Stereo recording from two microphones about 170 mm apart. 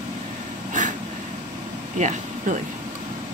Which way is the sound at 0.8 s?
50° right (ahead or behind).